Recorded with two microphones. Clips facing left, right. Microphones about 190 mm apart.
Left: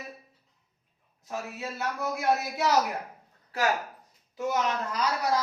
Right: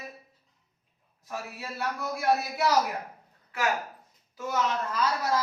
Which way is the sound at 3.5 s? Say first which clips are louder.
Left 2 dB; 35° left (ahead or behind).